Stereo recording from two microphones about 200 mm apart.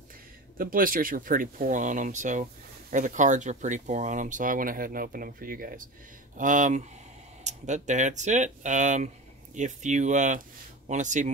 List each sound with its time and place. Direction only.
0.6 s speech: 45° right (ahead or behind)